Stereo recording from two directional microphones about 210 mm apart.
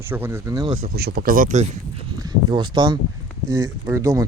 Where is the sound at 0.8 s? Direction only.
50° right (ahead or behind).